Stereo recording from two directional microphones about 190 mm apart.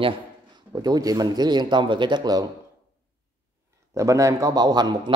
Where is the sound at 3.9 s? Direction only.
15° right (ahead or behind).